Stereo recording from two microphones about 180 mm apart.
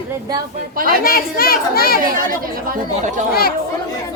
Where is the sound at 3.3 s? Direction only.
55° left (ahead or behind).